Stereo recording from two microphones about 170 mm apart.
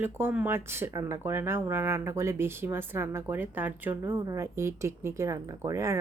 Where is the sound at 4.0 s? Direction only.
20° right (ahead or behind).